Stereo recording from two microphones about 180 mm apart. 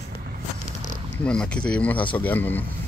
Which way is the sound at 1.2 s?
5° left (ahead or behind).